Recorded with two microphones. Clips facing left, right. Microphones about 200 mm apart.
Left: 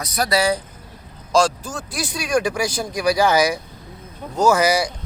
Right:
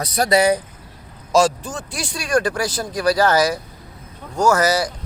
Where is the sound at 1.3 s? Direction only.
5° right (ahead or behind).